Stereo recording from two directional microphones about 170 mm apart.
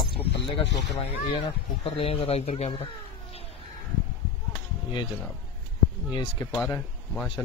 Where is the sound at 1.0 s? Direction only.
35° left (ahead or behind).